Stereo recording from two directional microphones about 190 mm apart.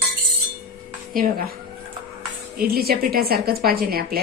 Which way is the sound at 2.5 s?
50° right (ahead or behind).